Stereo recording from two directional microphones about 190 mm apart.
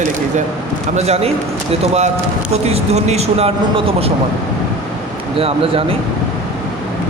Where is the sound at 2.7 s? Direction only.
35° right (ahead or behind).